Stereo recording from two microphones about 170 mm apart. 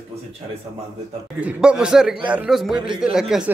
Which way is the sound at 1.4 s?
5° right (ahead or behind).